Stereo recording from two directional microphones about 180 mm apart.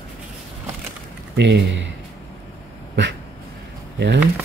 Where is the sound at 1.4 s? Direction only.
75° right (ahead or behind).